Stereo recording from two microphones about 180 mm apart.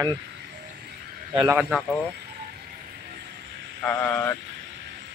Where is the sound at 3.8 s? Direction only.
5° left (ahead or behind).